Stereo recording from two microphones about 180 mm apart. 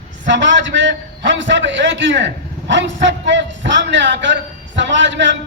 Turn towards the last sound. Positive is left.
turn(degrees=-85)